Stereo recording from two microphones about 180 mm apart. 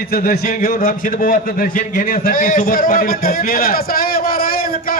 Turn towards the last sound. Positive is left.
turn(degrees=55)  # may be behind; listen again after turning